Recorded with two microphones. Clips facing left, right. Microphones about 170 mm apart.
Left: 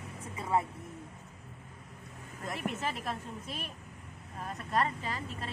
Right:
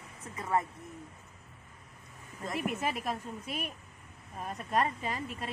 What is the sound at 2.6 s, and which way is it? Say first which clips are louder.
A woman's voice: right 3 dB; 15° right (ahead or behind).